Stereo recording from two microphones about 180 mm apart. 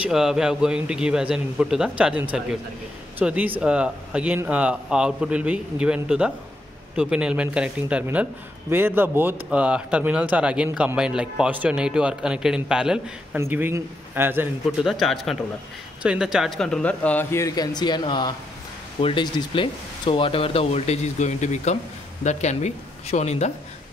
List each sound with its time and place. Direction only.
0.0 s speech: centre (ahead or behind)
14.9 s speech: centre (ahead or behind); by 23.5 s 40° left (ahead or behind)